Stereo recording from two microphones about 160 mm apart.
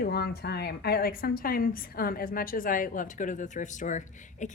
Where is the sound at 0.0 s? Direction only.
80° left.